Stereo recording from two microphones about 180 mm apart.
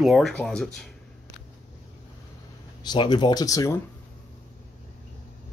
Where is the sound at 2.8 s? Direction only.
25° left (ahead or behind).